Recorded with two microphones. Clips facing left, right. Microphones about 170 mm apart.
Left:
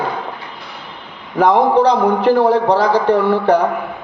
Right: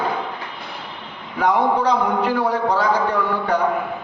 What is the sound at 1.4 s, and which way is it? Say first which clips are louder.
A man's voice: left 6 dB; 90° left.